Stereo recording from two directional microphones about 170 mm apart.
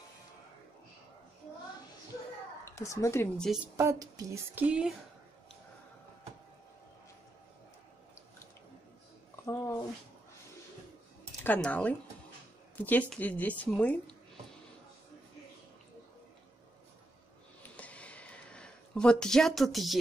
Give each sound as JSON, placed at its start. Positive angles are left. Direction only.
{"t": 2.6, "sound": "a woman's voice", "side_deg": 15}
{"t": 3.7, "sound": "a woman's voice", "side_deg": -20}
{"t": 4.6, "sound": "a woman's voice", "side_deg": -5}
{"t": 9.5, "sound": "a sound", "side_deg": 15}
{"t": 11.4, "sound": "a woman's voice", "side_deg": 10}
{"t": 17.7, "sound": "a sound", "side_deg": 10}